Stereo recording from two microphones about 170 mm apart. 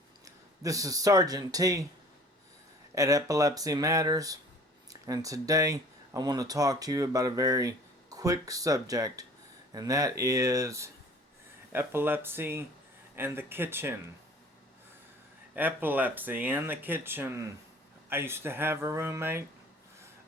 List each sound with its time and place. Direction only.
0.3 s speech: 20° right (ahead or behind)
2.9 s speech: 20° right (ahead or behind)
15.5 s speech: 10° right (ahead or behind)